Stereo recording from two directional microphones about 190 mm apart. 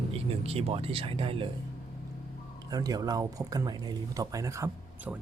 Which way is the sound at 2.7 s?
20° right (ahead or behind).